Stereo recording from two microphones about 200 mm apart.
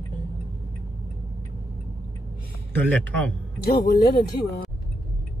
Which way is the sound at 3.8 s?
45° left (ahead or behind).